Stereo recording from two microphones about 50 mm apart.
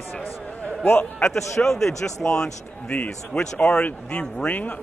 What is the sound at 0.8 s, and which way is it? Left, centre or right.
Speech, left.